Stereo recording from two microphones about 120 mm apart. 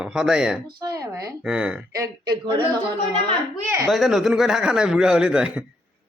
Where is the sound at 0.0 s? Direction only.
5° right (ahead or behind).